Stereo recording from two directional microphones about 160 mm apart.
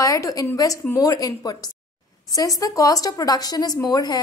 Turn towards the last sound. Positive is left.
turn(degrees=25)  # may be behind; listen again after turning